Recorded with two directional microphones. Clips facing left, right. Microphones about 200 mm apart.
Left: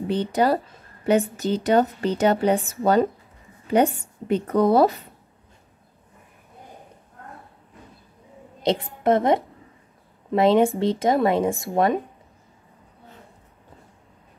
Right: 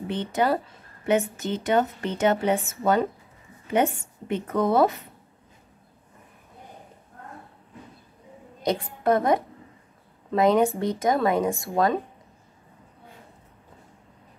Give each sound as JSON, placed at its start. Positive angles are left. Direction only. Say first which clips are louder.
{"t": 0.1, "sound": "a woman's voice", "louder": "left 3 dB", "side_deg": 35}
{"t": 8.6, "sound": "a woman's voice", "louder": "left 3 dB", "side_deg": 25}